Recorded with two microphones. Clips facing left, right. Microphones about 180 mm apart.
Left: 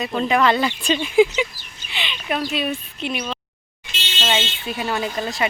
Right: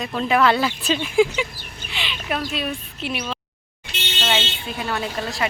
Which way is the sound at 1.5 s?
55° right (ahead or behind).